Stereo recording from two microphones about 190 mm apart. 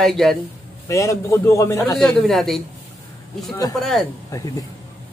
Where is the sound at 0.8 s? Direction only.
15° left (ahead or behind).